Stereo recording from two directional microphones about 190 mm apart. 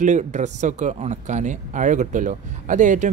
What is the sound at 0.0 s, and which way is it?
Speech, 40° right (ahead or behind).